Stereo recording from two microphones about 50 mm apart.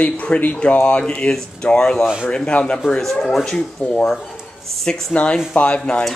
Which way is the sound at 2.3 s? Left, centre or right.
Left.